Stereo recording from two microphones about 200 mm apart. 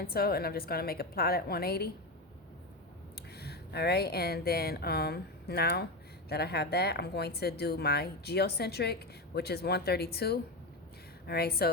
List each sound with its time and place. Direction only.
0.0 s speech: 50° left (ahead or behind)
3.2 s speech: 55° left (ahead or behind)